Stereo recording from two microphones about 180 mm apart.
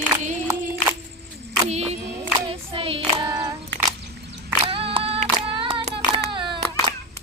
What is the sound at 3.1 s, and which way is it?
Female singing, 25° right (ahead or behind).